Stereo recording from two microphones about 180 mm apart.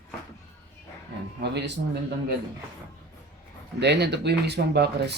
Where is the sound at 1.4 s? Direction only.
70° right (ahead or behind).